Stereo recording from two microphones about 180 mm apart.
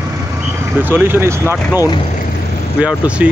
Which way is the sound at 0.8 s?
10° right (ahead or behind).